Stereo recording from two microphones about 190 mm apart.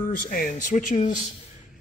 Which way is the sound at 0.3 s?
45° left (ahead or behind).